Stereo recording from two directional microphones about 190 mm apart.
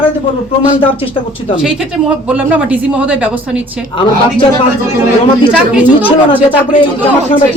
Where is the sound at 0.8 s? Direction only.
30° left (ahead or behind).